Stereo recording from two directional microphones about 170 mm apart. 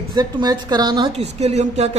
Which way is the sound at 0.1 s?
25° right (ahead or behind).